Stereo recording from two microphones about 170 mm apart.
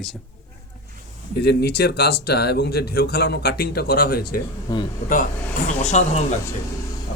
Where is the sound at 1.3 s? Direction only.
70° left (ahead or behind).